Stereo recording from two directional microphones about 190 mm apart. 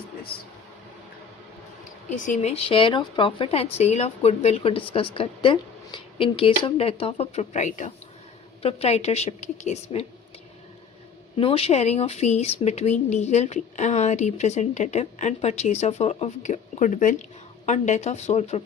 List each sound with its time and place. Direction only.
2.0 s speech: 40° left (ahead or behind)
11.3 s speech: 30° left (ahead or behind)